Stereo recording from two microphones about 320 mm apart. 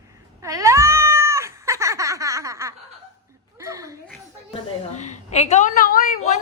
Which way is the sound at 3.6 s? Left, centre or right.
Centre.